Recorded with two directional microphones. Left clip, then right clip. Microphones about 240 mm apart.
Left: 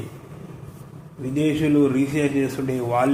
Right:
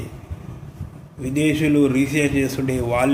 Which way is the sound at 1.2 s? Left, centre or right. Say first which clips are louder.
Right 2 dB; centre.